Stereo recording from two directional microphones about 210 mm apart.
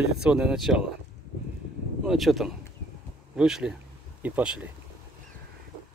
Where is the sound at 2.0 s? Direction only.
Centre (ahead or behind).